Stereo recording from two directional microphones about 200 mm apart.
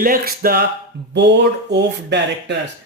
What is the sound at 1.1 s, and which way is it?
Speech, 60° right (ahead or behind).